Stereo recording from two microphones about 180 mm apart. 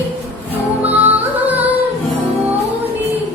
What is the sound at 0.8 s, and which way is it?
Music, 10° right (ahead or behind).